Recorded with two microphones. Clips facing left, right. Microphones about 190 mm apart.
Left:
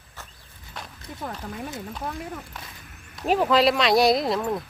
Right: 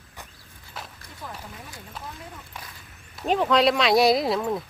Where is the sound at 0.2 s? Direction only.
15° right (ahead or behind).